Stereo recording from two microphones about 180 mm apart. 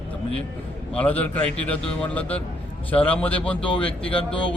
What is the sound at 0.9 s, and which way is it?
Speech, 10° left (ahead or behind).